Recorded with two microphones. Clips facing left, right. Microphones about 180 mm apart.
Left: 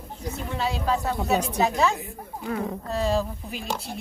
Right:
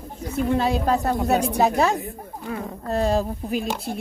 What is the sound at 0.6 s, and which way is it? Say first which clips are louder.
A woman's voice: right 4 dB; 50° right (ahead or behind).